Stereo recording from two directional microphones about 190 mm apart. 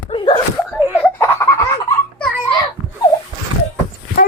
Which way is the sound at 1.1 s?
15° left (ahead or behind).